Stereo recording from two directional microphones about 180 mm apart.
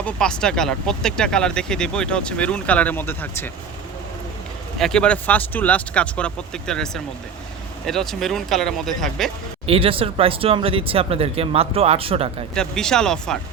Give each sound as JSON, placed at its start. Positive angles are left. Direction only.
{"t": 0.0, "sound": "speech", "side_deg": 5}
{"t": 4.8, "sound": "speech", "side_deg": 5}
{"t": 9.6, "sound": "speech", "side_deg": -30}
{"t": 12.5, "sound": "speech", "side_deg": 5}